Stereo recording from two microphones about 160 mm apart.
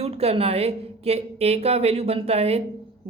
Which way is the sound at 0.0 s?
40° right (ahead or behind).